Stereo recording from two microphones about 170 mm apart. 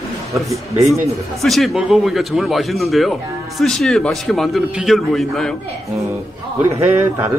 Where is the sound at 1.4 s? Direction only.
Centre (ahead or behind).